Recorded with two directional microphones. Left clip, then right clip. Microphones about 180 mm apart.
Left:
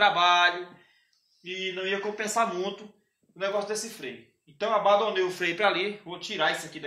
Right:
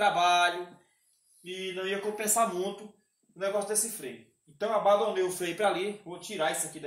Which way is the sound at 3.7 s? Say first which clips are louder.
Left 1 dB; 10° right (ahead or behind).